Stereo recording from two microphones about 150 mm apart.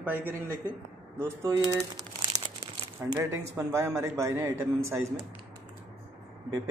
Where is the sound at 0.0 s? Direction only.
10° right (ahead or behind).